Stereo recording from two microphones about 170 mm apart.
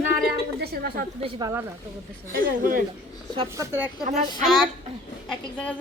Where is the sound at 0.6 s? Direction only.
65° right (ahead or behind).